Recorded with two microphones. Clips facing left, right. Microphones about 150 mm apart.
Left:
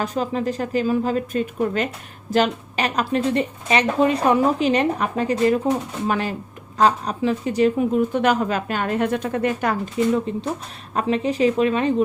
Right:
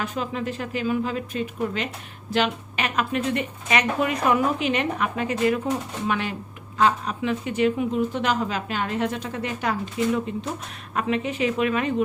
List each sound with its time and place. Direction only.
0.0 s speech: 35° left (ahead or behind)
10.3 s speech: 35° left (ahead or behind)